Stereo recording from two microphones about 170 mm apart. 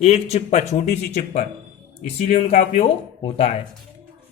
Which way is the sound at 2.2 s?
40° left (ahead or behind).